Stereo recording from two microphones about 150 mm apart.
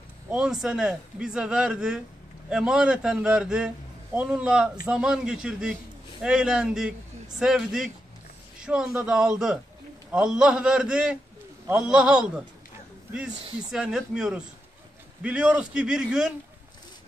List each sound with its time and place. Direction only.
0.3 s a man's voice: 5° right (ahead or behind)